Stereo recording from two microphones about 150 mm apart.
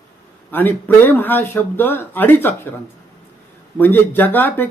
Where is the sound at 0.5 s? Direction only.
15° left (ahead or behind).